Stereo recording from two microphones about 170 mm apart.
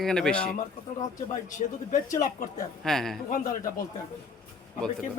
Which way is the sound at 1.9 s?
50° left (ahead or behind).